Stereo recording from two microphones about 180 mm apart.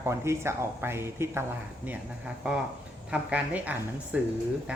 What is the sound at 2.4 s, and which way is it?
Speech, 5° right (ahead or behind).